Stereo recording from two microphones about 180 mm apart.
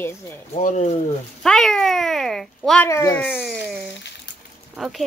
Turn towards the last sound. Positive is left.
turn(degrees=0)  # may be behind; listen again after turning